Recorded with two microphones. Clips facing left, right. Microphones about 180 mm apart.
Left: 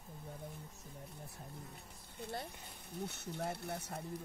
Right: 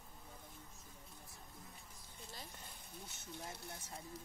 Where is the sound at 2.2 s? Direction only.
65° left (ahead or behind).